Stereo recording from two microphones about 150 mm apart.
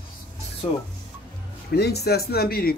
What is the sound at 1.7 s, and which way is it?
Speech, 90° left.